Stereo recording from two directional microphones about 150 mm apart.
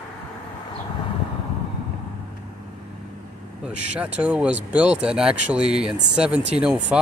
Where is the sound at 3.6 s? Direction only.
10° right (ahead or behind).